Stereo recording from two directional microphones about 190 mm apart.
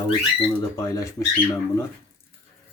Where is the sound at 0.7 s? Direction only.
15° left (ahead or behind).